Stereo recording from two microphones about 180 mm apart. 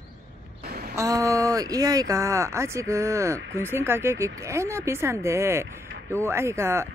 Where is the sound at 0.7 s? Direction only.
55° right (ahead or behind).